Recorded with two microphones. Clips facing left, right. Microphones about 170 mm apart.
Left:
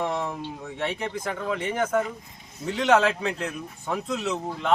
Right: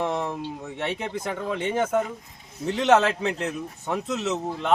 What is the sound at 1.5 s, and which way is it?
A man's voice, 25° right (ahead or behind).